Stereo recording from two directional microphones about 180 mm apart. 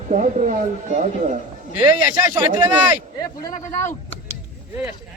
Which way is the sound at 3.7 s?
15° left (ahead or behind).